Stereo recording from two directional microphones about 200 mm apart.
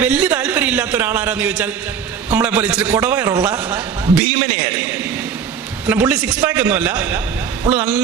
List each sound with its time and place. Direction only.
0.0 s a man's voice: 5° right (ahead or behind)
5.9 s a man's voice: 5° right (ahead or behind)